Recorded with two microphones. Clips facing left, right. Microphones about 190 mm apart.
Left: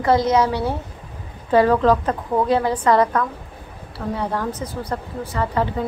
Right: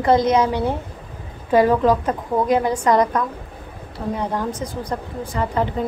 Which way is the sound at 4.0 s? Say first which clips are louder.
Right 1 dB; 30° right (ahead or behind).